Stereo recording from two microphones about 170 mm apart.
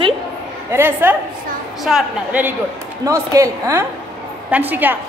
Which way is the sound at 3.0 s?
20° right (ahead or behind).